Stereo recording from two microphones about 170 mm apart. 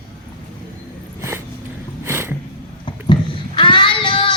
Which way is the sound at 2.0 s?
15° right (ahead or behind).